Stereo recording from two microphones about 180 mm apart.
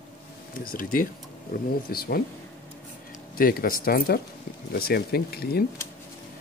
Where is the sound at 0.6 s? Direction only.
50° left (ahead or behind).